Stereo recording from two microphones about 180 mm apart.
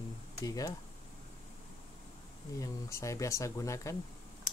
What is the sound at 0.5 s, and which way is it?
Speech, 20° left (ahead or behind).